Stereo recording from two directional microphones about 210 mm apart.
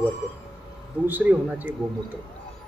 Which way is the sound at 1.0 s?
10° right (ahead or behind).